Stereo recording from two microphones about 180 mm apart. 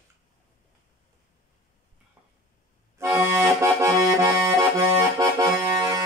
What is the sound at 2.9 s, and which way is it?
Accordion, 15° right (ahead or behind).